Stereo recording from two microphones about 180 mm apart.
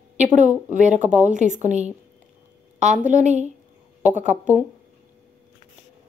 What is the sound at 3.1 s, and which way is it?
Speech, 40° right (ahead or behind).